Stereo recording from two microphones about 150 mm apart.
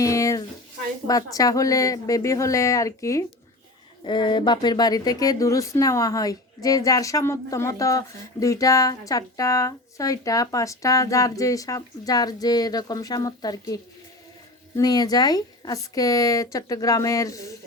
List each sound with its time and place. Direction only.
0.0 s a sound: 20° left (ahead or behind)
1.0 s speech: 25° left (ahead or behind)
4.0 s speech: 30° left (ahead or behind)
14.8 s speech: 25° left (ahead or behind)